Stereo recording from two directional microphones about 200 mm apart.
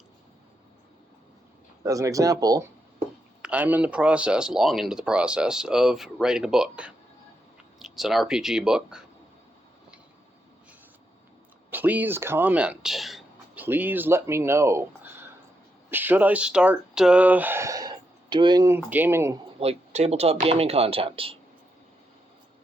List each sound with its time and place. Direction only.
1.8 s speech: 15° right (ahead or behind)
3.4 s speech: 5° right (ahead or behind)
11.7 s speech: 10° right (ahead or behind)
19.5 s speech: 30° right (ahead or behind)